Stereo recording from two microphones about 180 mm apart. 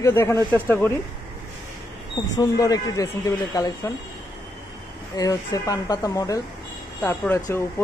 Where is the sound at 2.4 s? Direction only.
20° left (ahead or behind).